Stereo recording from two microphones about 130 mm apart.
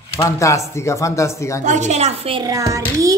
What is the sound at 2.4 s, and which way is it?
Speech, 25° right (ahead or behind).